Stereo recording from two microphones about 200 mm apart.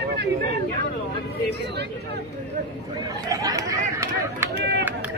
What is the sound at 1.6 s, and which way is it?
Speech, 55° right (ahead or behind).